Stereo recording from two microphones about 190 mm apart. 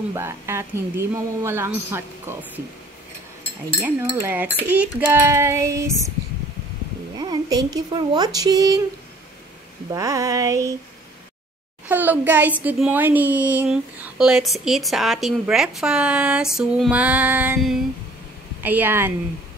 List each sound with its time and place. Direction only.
0.1 s speech: 15° right (ahead or behind)
3.8 s speech: 15° right (ahead or behind)
7.2 s speech: 20° right (ahead or behind)
9.8 s speech: 15° right (ahead or behind)
11.9 s a woman's voice: 10° right (ahead or behind)